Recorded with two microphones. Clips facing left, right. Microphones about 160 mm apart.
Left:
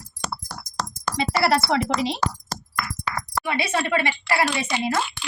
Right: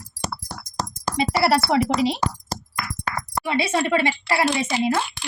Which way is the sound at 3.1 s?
45° right (ahead or behind).